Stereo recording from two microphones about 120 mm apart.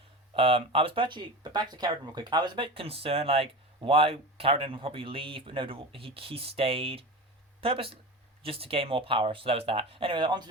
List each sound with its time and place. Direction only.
0.3 s speech: 50° right (ahead or behind)